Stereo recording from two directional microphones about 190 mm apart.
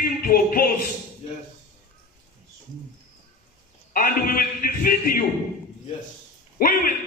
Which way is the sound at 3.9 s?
50° left (ahead or behind).